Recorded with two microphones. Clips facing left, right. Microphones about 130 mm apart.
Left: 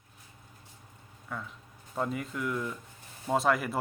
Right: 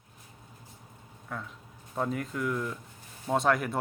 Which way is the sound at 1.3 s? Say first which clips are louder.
Even; centre (ahead or behind).